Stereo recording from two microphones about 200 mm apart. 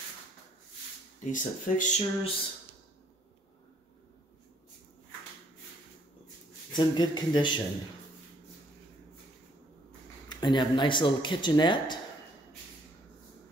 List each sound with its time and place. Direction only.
1.2 s speech: 40° left (ahead or behind)
6.7 s speech: 20° left (ahead or behind)
10.3 s speech: 20° left (ahead or behind)